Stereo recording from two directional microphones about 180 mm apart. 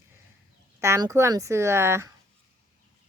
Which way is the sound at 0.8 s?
15° right (ahead or behind).